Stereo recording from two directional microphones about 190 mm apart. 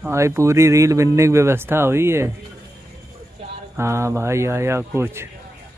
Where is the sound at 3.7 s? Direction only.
15° right (ahead or behind).